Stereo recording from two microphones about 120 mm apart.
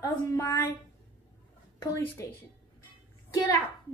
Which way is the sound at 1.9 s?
25° left (ahead or behind).